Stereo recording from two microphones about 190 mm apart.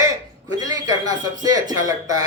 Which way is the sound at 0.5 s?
20° right (ahead or behind).